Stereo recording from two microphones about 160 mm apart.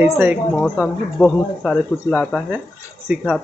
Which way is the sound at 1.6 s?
10° left (ahead or behind).